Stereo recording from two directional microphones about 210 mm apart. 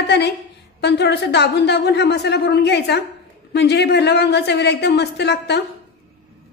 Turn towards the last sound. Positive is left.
turn(degrees=55)  # may be behind; listen again after turning